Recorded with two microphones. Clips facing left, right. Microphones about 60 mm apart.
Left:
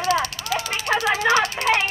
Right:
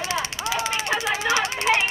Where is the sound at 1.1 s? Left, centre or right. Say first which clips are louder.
Left 5 dB; left.